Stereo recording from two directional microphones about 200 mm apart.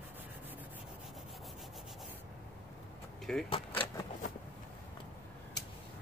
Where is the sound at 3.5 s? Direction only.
25° left (ahead or behind).